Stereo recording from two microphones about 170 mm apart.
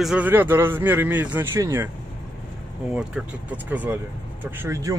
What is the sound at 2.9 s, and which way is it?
Speech, 10° right (ahead or behind).